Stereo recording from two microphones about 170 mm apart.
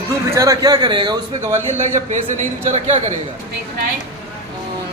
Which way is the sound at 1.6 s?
45° right (ahead or behind).